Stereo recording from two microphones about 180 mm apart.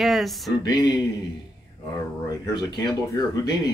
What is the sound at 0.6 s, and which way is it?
Speech, 25° left (ahead or behind).